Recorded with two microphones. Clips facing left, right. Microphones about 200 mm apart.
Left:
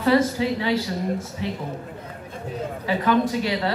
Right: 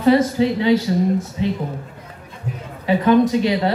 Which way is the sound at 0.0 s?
25° right (ahead or behind).